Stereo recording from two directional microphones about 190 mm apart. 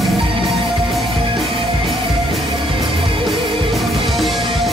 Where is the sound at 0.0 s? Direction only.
Centre (ahead or behind).